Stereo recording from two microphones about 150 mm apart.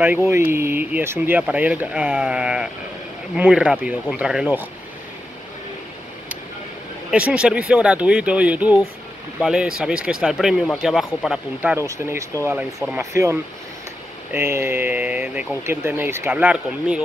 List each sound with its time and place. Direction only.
0.0 s speech: 15° right (ahead or behind)
7.1 s speech: 5° right (ahead or behind)
11.2 s speech: 10° right (ahead or behind)